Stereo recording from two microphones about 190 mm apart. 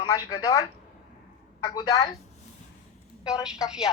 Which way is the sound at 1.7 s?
20° left (ahead or behind).